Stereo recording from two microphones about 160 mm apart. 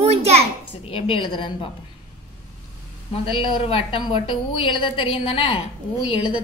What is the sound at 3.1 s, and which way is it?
A woman's voice, 35° left (ahead or behind).